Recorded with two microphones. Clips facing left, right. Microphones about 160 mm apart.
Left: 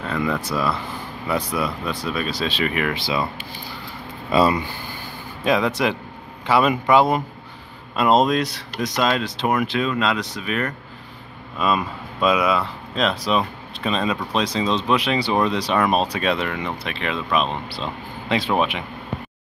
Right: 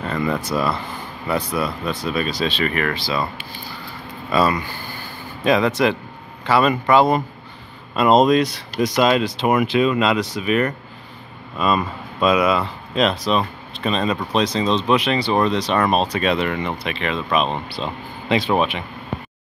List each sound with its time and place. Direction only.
0.0 s a sound: centre (ahead or behind)
0.5 s speech: 5° left (ahead or behind)
4.3 s speech: 25° left (ahead or behind)
5.4 s speech: 5° left (ahead or behind)